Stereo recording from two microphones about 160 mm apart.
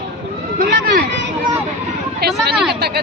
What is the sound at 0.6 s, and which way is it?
Run, 65° right (ahead or behind).